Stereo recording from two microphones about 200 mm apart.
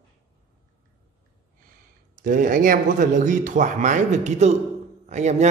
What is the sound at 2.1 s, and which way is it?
Speech, 40° right (ahead or behind).